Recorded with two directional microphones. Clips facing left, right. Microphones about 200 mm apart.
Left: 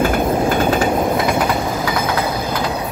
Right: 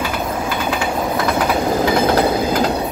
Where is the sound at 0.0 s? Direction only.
50° left (ahead or behind).